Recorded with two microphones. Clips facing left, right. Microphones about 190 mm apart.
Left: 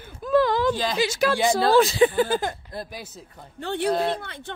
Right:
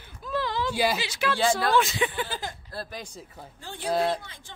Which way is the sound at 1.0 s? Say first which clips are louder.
Left 7 dB; 45° left (ahead or behind).